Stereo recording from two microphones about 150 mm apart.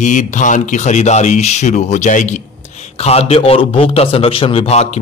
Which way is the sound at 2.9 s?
45° left (ahead or behind).